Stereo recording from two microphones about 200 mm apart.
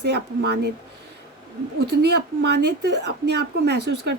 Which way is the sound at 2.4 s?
55° right (ahead or behind).